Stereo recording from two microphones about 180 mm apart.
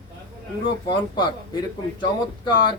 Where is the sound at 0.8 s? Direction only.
25° left (ahead or behind).